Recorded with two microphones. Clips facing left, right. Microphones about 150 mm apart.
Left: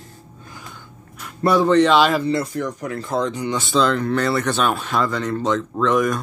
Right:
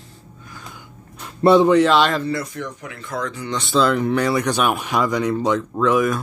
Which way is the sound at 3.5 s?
Centre (ahead or behind).